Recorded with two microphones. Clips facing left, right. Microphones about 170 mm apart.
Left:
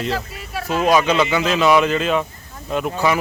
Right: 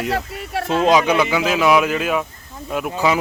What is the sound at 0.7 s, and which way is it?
Speech, 25° right (ahead or behind).